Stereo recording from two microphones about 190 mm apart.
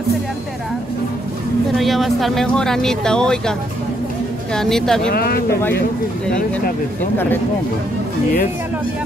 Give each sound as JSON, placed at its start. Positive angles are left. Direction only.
{"t": 1.8, "sound": "speech", "side_deg": 0}
{"t": 4.6, "sound": "speech", "side_deg": 0}
{"t": 5.1, "sound": "speech", "side_deg": 50}